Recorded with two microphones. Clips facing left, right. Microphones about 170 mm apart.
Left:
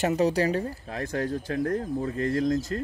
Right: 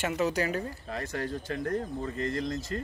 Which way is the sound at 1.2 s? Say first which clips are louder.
Left 7 dB; 45° left (ahead or behind).